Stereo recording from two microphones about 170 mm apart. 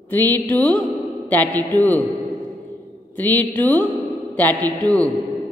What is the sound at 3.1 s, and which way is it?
A man's voice, 10° left (ahead or behind).